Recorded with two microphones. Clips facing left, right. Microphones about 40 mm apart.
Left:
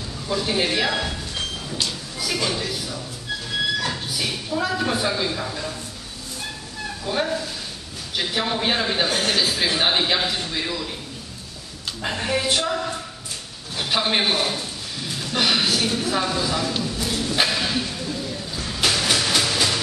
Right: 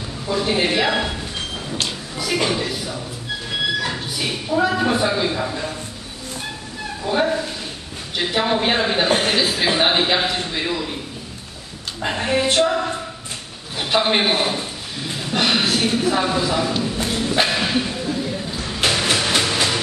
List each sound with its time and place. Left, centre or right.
0.3 s a man's voice: centre
2.3 s a man's voice: right
3.7 s a sound: centre
4.2 s a man's voice: centre
7.1 s a man's voice: centre
12.0 s a man's voice: centre
16.8 s a sound: right